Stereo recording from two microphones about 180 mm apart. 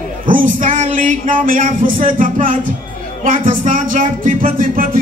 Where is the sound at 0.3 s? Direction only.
50° right (ahead or behind).